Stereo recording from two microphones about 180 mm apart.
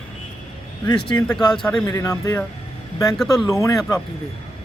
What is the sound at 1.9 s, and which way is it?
Speech, 20° left (ahead or behind).